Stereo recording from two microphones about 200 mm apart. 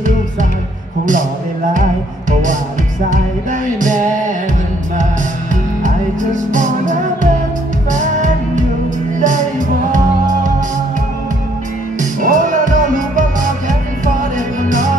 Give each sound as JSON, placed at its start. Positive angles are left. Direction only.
{"t": 3.8, "sound": "music", "side_deg": -40}
{"t": 6.5, "sound": "music", "side_deg": -40}
{"t": 12.0, "sound": "music", "side_deg": -40}